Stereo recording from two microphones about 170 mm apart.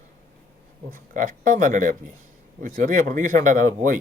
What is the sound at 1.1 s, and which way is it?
Speech, 50° right (ahead or behind).